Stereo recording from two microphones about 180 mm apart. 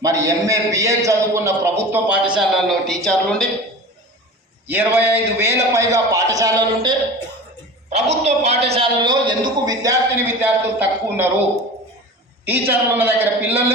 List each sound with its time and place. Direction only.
0.0 s a man's voice: 20° right (ahead or behind); by 3.5 s centre (ahead or behind)
4.7 s a man's voice: 10° right (ahead or behind)
7.9 s a man's voice: 40° right (ahead or behind); by 11.3 s 10° right (ahead or behind)
12.5 s a man's voice: 10° right (ahead or behind)